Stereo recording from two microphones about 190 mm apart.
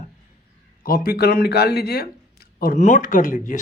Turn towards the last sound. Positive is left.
turn(degrees=45)  # may be behind; listen again after turning